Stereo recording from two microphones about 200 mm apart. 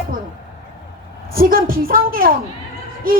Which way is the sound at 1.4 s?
45° right (ahead or behind).